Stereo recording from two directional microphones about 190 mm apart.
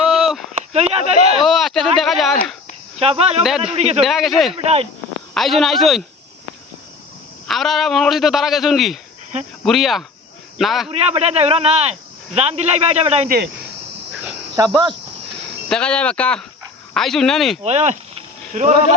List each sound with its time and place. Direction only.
0.1 s a sound: centre (ahead or behind)
0.5 s a sound: 35° right (ahead or behind)
1.5 s a sound: centre (ahead or behind)
2.0 s speech: centre (ahead or behind)
3.0 s speech: 30° right (ahead or behind)
4.0 s speech: centre (ahead or behind)
4.5 s speech: 30° right (ahead or behind)
5.3 s speech: centre (ahead or behind)
7.4 s speech: centre (ahead or behind)
10.8 s speech: 30° right (ahead or behind)
13.2 s speech: 50° right (ahead or behind)
14.5 s speech: 20° right (ahead or behind)
15.7 s speech: 5° left (ahead or behind)
17.6 s speech: 35° right (ahead or behind)